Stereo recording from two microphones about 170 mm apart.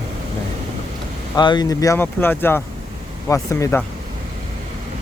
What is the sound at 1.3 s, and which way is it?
Speech, 25° left (ahead or behind).